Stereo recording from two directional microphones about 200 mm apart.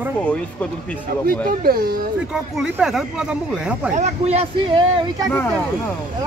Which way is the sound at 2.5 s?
Centre (ahead or behind).